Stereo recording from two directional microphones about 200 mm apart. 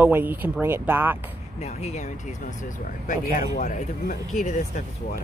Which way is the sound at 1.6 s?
35° left (ahead or behind).